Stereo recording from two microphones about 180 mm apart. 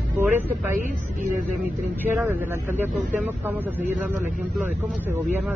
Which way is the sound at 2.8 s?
10° right (ahead or behind).